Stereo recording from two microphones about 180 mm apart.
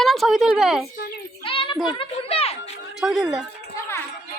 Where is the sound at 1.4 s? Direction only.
30° left (ahead or behind).